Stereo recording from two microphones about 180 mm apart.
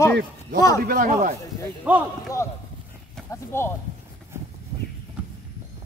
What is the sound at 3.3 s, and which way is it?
Speech, 15° left (ahead or behind).